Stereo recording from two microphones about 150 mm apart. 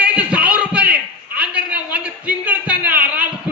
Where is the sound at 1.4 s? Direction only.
10° right (ahead or behind).